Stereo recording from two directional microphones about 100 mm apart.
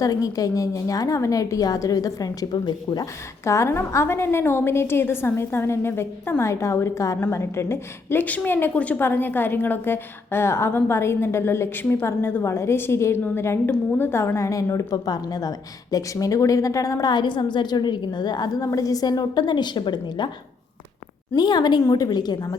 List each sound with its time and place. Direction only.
0.0 s a woman's voice: 40° left (ahead or behind)
3.4 s a woman's voice: 30° left (ahead or behind)
17.1 s a woman's voice: 50° left (ahead or behind)
21.3 s a woman's voice: 45° left (ahead or behind)